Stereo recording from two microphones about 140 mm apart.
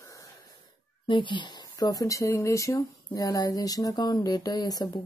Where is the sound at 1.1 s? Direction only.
35° left (ahead or behind).